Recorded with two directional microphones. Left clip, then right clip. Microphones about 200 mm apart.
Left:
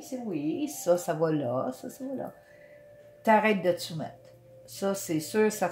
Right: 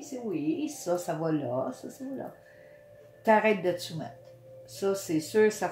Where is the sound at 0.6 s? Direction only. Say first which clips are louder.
Left 4 dB; 35° left (ahead or behind).